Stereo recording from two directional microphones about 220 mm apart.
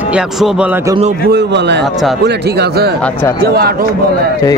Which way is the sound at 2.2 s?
50° right (ahead or behind).